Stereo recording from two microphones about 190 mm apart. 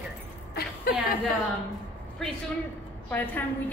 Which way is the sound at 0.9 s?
50° left (ahead or behind).